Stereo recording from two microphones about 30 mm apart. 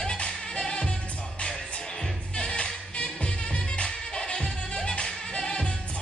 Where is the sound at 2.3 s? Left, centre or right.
Left.